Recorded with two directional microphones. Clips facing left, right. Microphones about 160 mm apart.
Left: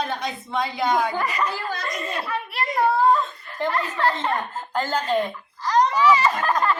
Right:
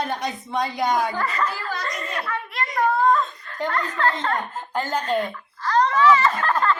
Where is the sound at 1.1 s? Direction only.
15° left (ahead or behind).